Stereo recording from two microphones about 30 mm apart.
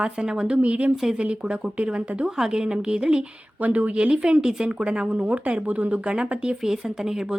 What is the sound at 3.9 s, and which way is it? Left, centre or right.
Speech, right.